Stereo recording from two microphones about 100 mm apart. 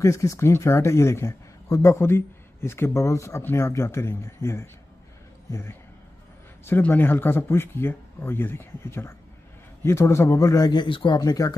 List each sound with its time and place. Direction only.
0.0 s speech: 35° left (ahead or behind)
6.8 s speech: 20° left (ahead or behind); by 11.1 s 55° left (ahead or behind)
11.1 s speech: 40° left (ahead or behind)